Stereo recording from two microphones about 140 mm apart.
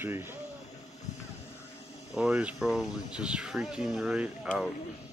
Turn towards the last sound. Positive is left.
turn(degrees=-5)  # may be behind; listen again after turning